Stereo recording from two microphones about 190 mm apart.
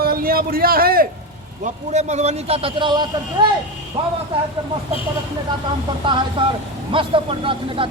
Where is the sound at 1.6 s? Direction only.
35° right (ahead or behind).